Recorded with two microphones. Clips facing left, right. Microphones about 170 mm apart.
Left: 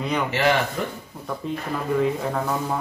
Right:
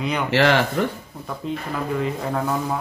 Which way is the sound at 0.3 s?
75° right (ahead or behind).